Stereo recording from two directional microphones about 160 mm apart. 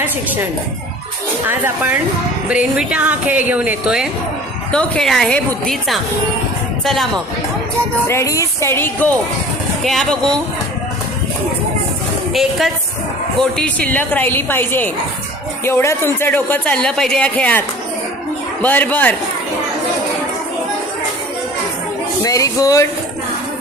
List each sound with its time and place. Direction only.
0.0 s speech: 10° right (ahead or behind)
1.5 s a woman's voice: 10° right (ahead or behind)
8.0 s speech: 20° left (ahead or behind)
9.8 s a woman's voice: centre (ahead or behind)
12.3 s a woman's voice: centre (ahead or behind)
18.6 s speech: 10° left (ahead or behind)
22.2 s speech: 20° left (ahead or behind)